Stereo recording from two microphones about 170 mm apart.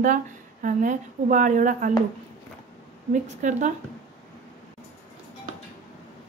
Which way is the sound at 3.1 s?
45° right (ahead or behind).